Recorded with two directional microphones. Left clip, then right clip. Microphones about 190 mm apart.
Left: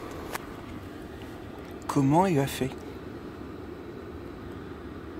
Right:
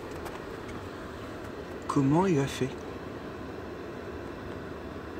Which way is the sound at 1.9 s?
35° left (ahead or behind).